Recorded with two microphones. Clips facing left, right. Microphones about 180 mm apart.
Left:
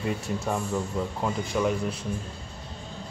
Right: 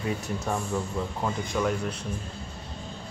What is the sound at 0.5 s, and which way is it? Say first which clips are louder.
Speech: left 1 dB; 5° left (ahead or behind).